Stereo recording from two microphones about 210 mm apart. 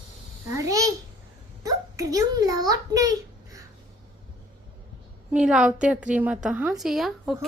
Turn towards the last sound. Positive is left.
turn(degrees=0)  # may be behind; listen again after turning